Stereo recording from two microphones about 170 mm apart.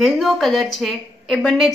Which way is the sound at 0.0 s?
Centre (ahead or behind).